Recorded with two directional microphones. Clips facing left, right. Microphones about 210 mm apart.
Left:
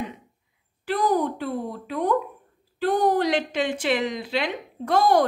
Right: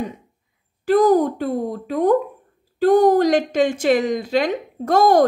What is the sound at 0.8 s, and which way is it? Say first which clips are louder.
Speech: right 8 dB; 45° right (ahead or behind).